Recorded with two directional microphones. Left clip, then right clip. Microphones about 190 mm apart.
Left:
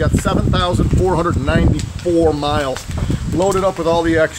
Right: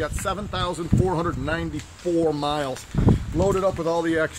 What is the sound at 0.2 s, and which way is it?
Speech, 45° right (ahead or behind).